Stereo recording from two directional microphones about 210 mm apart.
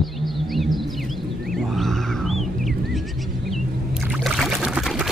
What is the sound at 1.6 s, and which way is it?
Music, centre (ahead or behind).